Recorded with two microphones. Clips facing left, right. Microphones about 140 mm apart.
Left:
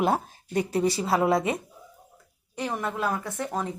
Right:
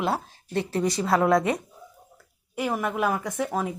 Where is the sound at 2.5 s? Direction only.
10° right (ahead or behind).